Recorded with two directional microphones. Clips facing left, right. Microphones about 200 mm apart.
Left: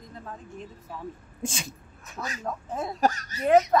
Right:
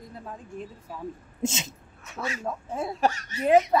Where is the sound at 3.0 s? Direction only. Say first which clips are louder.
Left 1 dB; 40° left (ahead or behind).